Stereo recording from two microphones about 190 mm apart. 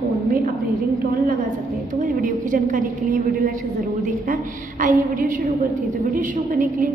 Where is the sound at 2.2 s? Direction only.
45° right (ahead or behind).